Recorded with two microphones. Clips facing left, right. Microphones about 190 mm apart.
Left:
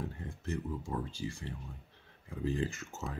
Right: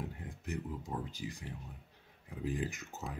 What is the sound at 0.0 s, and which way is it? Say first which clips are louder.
Speech: left 3 dB; 15° right (ahead or behind).